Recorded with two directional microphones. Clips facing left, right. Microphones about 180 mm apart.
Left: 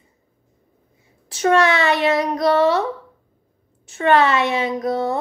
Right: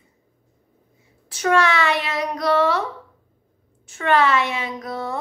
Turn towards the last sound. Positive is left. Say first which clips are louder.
# left 7 dB
turn(degrees=25)  # may be behind; listen again after turning